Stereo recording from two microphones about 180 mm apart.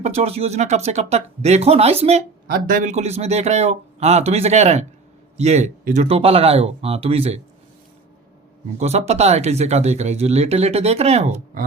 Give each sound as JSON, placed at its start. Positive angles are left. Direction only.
{"t": 0.0, "sound": "speech", "side_deg": -35}
{"t": 2.5, "sound": "speech", "side_deg": -45}
{"t": 8.8, "sound": "speech", "side_deg": -35}